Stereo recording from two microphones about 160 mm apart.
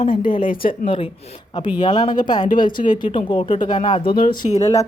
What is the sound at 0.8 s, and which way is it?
Speech, 35° left (ahead or behind).